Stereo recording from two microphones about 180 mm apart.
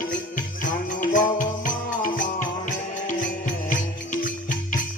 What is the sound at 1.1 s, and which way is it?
Music, 45° left (ahead or behind).